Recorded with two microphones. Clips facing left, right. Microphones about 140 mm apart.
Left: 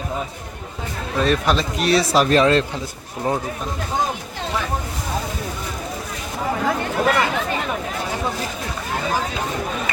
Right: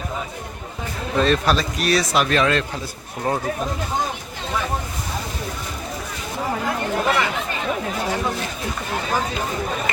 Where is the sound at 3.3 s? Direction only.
15° left (ahead or behind).